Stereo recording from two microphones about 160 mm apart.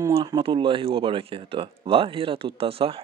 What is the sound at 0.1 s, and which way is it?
Speech, 35° right (ahead or behind).